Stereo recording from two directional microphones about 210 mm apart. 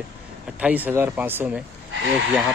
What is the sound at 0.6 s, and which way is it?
Speech, 5° right (ahead or behind).